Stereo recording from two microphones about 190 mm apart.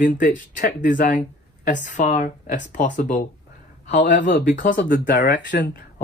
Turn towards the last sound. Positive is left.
turn(degrees=65)  # may be behind; listen again after turning